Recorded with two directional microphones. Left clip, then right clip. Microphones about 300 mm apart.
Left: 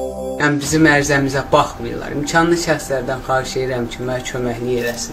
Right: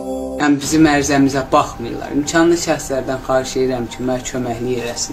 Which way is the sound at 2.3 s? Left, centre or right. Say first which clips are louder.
Even; centre.